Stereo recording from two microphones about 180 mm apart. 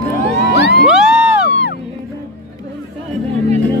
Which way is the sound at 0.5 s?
65° left (ahead or behind).